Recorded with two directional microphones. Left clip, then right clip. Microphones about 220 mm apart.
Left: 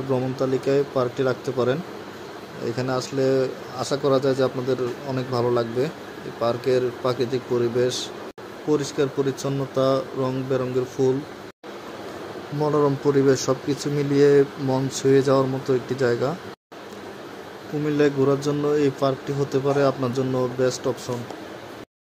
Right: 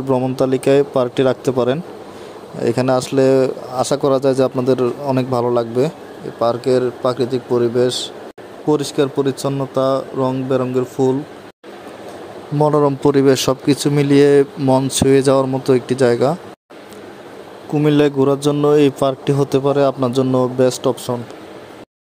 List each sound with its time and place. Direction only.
0.1 s speech: 40° right (ahead or behind)
12.5 s speech: 40° right (ahead or behind)
17.8 s speech: 40° right (ahead or behind)